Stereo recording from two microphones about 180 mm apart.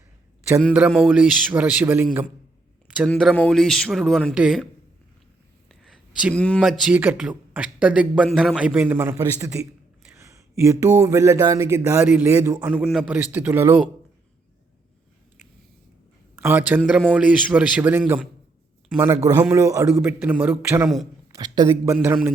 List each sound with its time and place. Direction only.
0.7 s a man's voice: 10° right (ahead or behind)
3.1 s a man's voice: 5° left (ahead or behind)
5.8 s a sound: 5° right (ahead or behind)
6.3 s a man's voice: 5° left (ahead or behind); by 9.6 s 15° right (ahead or behind)
10.2 s a sound: 15° right (ahead or behind)
11.0 s a man's voice: 15° right (ahead or behind)
12.8 s a man's voice: 5° right (ahead or behind)
16.3 s a man's voice: 10° right (ahead or behind)